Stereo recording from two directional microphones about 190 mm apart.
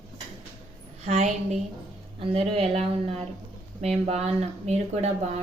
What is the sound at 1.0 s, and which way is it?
Speech, 35° right (ahead or behind).